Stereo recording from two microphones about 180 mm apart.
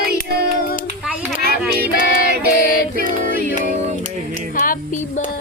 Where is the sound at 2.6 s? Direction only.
55° left (ahead or behind).